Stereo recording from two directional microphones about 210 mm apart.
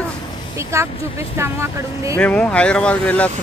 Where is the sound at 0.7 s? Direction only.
15° right (ahead or behind).